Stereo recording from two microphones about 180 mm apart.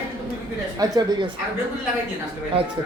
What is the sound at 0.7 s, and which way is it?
Speech, 20° right (ahead or behind).